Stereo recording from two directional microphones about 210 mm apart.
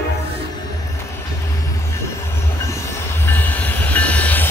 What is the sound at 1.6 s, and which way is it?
Vehicle, 15° left (ahead or behind).